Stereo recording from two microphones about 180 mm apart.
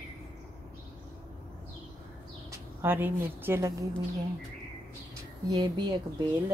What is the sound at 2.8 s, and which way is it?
Speech, 10° right (ahead or behind).